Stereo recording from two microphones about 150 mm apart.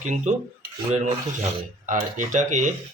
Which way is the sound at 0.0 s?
55° right (ahead or behind).